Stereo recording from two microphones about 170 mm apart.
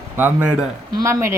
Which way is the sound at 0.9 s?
15° right (ahead or behind).